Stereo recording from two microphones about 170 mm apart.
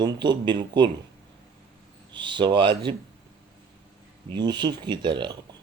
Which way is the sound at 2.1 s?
25° right (ahead or behind).